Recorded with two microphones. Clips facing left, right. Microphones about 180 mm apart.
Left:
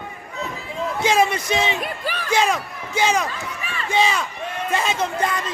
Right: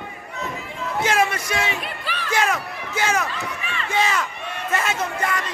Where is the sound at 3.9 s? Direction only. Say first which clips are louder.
Left 2 dB; 15° left (ahead or behind).